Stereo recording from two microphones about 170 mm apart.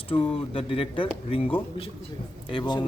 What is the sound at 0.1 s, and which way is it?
Speech, 35° left (ahead or behind).